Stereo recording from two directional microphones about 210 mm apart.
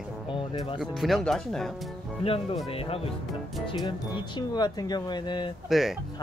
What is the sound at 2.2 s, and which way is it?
Speech, 25° left (ahead or behind).